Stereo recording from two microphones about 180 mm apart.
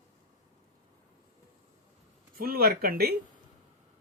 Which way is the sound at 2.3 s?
55° right (ahead or behind).